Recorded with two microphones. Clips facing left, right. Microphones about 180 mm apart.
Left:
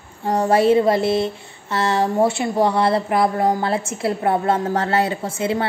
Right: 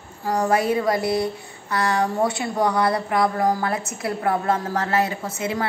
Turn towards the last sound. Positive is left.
turn(degrees=30)  # may be behind; listen again after turning